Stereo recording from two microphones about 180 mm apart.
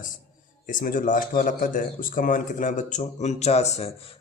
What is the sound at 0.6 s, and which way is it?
Speech, 50° left (ahead or behind).